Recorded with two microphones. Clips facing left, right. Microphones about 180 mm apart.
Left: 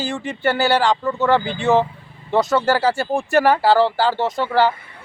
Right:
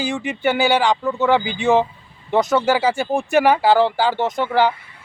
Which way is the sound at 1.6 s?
15° right (ahead or behind).